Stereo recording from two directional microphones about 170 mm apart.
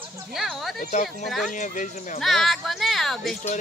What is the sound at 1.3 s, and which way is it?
Speech, centre (ahead or behind).